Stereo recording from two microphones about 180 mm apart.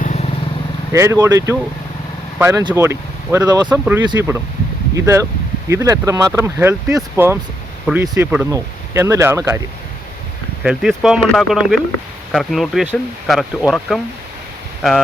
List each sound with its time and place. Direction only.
0.0 s vehicle: 40° left (ahead or behind)
0.9 s speech: 15° right (ahead or behind)
3.7 s speech: 10° right (ahead or behind)
10.6 s speech: 5° right (ahead or behind)